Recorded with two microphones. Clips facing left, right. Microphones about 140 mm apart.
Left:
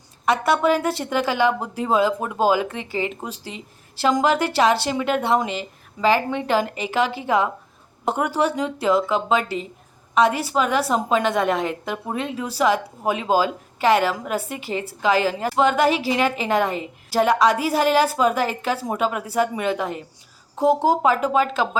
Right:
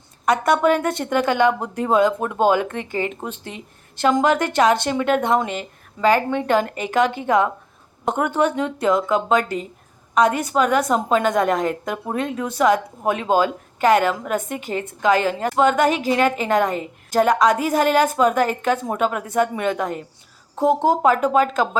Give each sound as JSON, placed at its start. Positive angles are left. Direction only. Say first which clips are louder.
{"t": 0.3, "sound": "a woman's voice", "louder": "right 2 dB", "side_deg": 5}
{"t": 2.6, "sound": "speech", "louder": "right 2 dB", "side_deg": -50}
{"t": 3.2, "sound": "a woman's voice", "louder": "right 2 dB", "side_deg": 10}
{"t": 9.4, "sound": "speech", "louder": "right 2 dB", "side_deg": -45}
{"t": 10.2, "sound": "a woman's voice", "louder": "right 1 dB", "side_deg": 5}
{"t": 14.5, "sound": "speech", "louder": "right 2 dB", "side_deg": -40}
{"t": 15.0, "sound": "a woman's voice", "louder": "right 2 dB", "side_deg": 5}